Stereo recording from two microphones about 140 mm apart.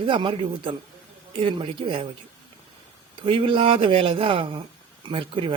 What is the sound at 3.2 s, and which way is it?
A woman's voice, 40° right (ahead or behind).